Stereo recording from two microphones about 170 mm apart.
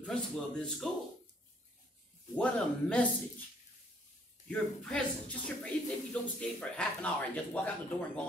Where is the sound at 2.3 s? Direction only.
5° left (ahead or behind).